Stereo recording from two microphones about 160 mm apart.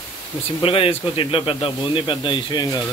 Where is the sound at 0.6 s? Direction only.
35° left (ahead or behind).